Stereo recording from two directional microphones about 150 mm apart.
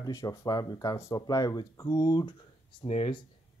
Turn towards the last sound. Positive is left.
turn(degrees=40)  # may be behind; listen again after turning